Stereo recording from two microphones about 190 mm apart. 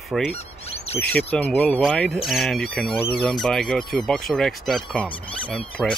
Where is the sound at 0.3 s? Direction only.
35° left (ahead or behind).